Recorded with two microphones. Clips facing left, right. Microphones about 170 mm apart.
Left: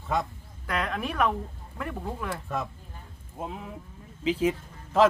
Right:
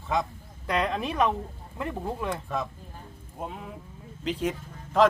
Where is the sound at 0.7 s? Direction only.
25° right (ahead or behind).